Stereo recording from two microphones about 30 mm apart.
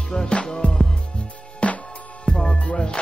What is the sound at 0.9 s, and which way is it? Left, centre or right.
Music, left.